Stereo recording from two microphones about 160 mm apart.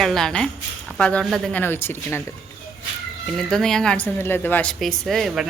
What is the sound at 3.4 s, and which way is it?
A woman's voice, 5° left (ahead or behind).